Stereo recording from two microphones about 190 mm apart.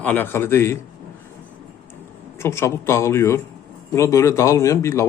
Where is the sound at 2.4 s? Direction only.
15° left (ahead or behind).